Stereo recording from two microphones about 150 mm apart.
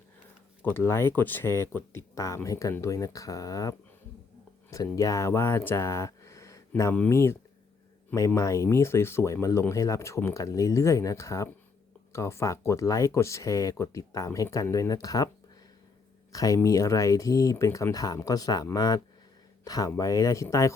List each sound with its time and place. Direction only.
0.9 s speech: 15° left (ahead or behind)
16.3 s speech: 25° left (ahead or behind)